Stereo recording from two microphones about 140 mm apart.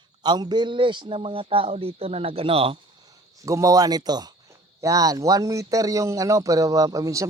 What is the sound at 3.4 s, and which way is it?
Speech, 25° right (ahead or behind).